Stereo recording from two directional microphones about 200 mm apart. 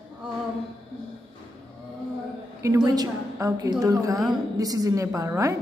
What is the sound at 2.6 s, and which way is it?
A woman's voice, 20° right (ahead or behind).